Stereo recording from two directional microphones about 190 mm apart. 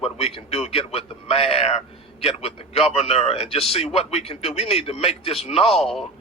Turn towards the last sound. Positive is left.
turn(degrees=0)  # may be behind; listen again after turning